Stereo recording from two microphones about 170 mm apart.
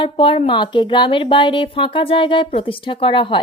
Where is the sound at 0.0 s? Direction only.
30° left (ahead or behind).